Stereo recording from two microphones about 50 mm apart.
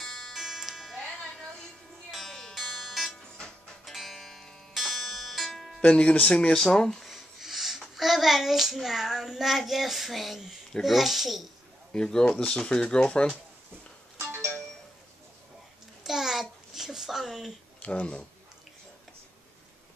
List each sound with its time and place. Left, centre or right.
0.0 s music: centre
2.0 s music: centre
5.8 s a child's voice: left; by 11.4 s centre
11.9 s speech: centre
14.3 s music: right
16.0 s babbling: centre
17.7 s speech: left